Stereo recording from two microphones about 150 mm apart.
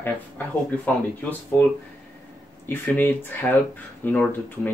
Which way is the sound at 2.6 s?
15° left (ahead or behind).